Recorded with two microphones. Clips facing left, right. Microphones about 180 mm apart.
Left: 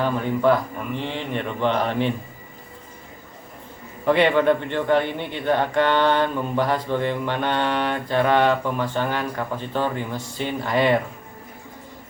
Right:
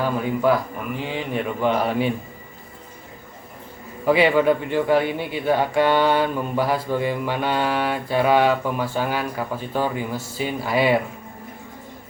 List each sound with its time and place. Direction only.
0.0 s a man's voice: 5° right (ahead or behind)
4.0 s a man's voice: 5° right (ahead or behind)